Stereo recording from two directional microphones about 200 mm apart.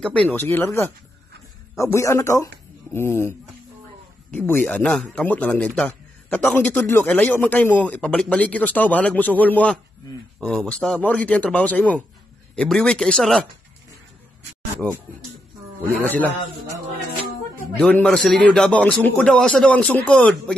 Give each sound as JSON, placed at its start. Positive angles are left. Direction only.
{"t": 0.3, "sound": "a man's voice", "side_deg": 10}
{"t": 14.8, "sound": "speech", "side_deg": 5}
{"t": 16.7, "sound": "speech", "side_deg": 10}